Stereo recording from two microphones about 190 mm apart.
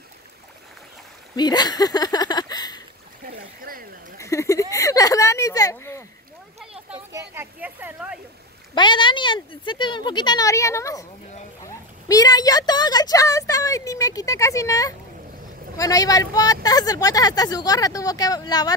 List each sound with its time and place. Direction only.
1.3 s speech: 20° left (ahead or behind)
3.3 s speech: 50° right (ahead or behind)
4.2 s speech: 15° left (ahead or behind)
6.9 s speech: 15° right (ahead or behind)
8.7 s speech: 25° left (ahead or behind)